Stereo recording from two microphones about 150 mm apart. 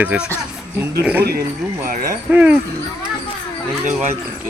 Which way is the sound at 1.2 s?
90° right.